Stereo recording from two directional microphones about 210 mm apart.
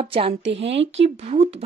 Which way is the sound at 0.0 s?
30° right (ahead or behind).